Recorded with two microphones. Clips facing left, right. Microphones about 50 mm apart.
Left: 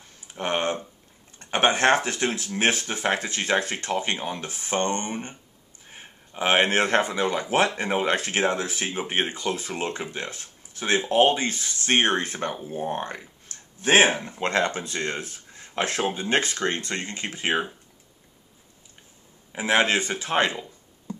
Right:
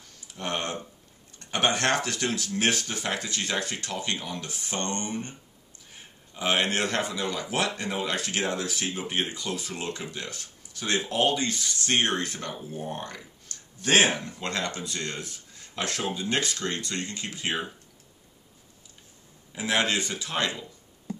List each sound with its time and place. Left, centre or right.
0.0 s a sound: left
1.4 s speech: left
19.5 s speech: left